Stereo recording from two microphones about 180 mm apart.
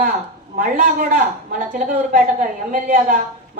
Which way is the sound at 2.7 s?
45° right (ahead or behind).